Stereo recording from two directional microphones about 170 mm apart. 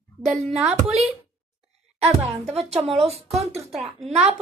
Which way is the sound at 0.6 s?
40° right (ahead or behind).